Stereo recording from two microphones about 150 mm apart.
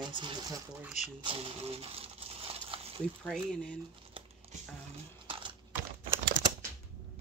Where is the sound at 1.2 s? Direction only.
40° right (ahead or behind).